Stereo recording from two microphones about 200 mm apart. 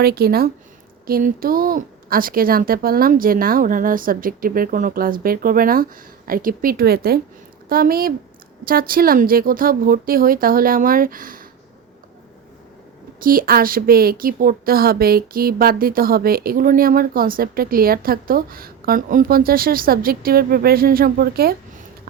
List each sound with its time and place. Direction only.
0.0 s a woman's voice: 50° right (ahead or behind)
13.2 s a woman's voice: 45° right (ahead or behind)